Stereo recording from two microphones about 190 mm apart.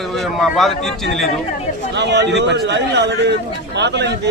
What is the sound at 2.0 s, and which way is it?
A man's voice, 65° right (ahead or behind).